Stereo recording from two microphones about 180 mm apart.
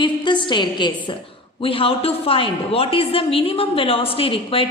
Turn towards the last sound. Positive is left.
turn(degrees=30)  # may be behind; listen again after turning